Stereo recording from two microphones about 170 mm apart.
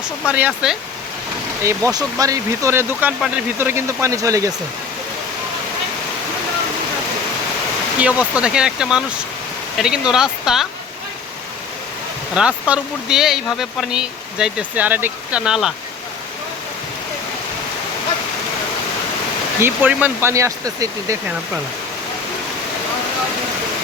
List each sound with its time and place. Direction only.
0.3 s speech: 10° right (ahead or behind)
1.6 s speech: 20° right (ahead or behind)
7.9 s speech: 5° right (ahead or behind)
12.3 s speech: 5° right (ahead or behind)
19.6 s speech: 10° right (ahead or behind)